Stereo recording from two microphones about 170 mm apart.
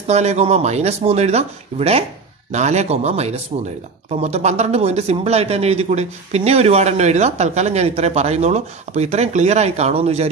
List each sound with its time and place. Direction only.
0.0 s speech: 40° right (ahead or behind)